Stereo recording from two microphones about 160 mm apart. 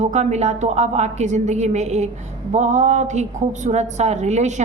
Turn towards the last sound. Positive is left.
turn(degrees=-45)  # may be behind; listen again after turning